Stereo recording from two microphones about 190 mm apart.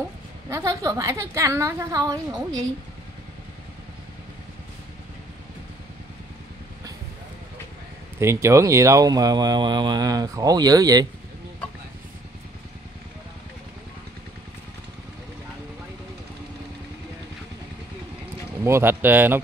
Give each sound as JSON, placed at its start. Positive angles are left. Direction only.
{"t": 0.5, "sound": "a woman's voice", "side_deg": -15}
{"t": 8.2, "sound": "speech", "side_deg": -15}
{"t": 18.6, "sound": "a woman's voice", "side_deg": -15}